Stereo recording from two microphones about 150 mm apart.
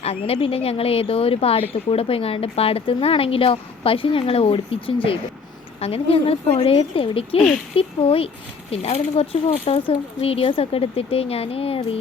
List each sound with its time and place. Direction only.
0.0 s a woman's voice: 40° left (ahead or behind)